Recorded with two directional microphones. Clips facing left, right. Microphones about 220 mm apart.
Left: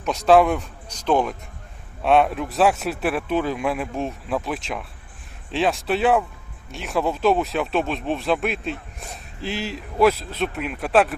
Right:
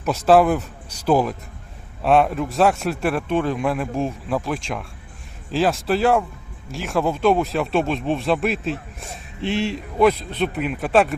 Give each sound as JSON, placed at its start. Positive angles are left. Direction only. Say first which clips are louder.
{"t": 0.0, "sound": "a man's voice", "louder": "right 1 dB", "side_deg": 0}